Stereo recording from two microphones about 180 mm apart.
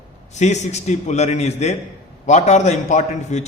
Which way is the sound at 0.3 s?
40° left (ahead or behind).